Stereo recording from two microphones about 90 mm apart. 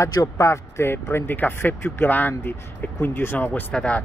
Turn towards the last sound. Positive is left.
turn(degrees=10)  # may be behind; listen again after turning